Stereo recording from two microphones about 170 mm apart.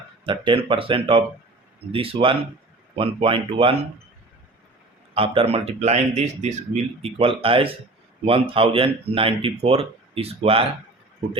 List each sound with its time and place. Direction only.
0.3 s speech: 30° right (ahead or behind)
5.1 s speech: 30° right (ahead or behind)